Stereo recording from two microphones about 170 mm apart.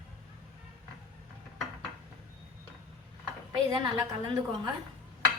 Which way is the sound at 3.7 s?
25° right (ahead or behind).